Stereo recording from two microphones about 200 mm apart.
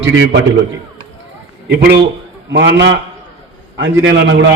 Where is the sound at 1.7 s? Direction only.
55° right (ahead or behind).